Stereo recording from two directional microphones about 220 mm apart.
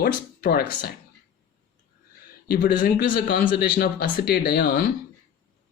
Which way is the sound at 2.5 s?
40° left (ahead or behind).